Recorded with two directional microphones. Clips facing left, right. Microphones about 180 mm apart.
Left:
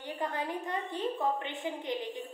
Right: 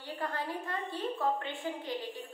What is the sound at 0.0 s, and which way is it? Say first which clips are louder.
A woman's voice: left 2 dB; 20° left (ahead or behind).